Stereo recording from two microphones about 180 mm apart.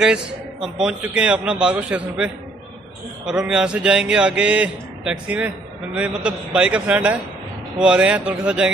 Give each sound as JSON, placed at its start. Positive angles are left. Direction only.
{"t": 0.0, "sound": "a man's voice", "side_deg": -5}